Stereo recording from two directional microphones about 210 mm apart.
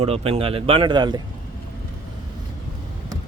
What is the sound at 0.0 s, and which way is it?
Speech, 30° right (ahead or behind).